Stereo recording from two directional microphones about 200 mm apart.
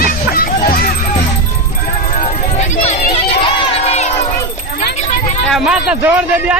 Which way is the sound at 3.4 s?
30° left (ahead or behind).